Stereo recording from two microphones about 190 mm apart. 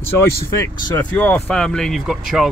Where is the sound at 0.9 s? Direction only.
10° left (ahead or behind).